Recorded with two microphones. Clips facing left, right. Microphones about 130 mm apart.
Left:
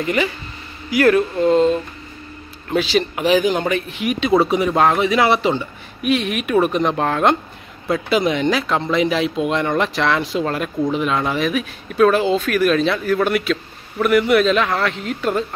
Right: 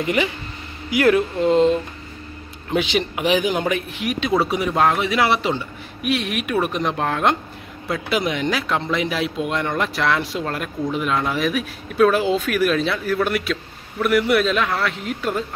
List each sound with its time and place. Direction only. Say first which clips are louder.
0.0 s speech: left 1 dB; 15° right (ahead or behind)